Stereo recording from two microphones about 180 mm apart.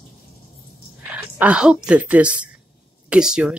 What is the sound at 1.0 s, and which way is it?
Speech, 10° right (ahead or behind).